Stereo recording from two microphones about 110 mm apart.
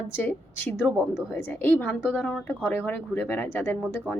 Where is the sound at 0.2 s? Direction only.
20° left (ahead or behind).